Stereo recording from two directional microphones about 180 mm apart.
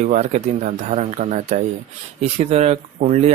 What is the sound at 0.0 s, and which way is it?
Speech, 40° right (ahead or behind).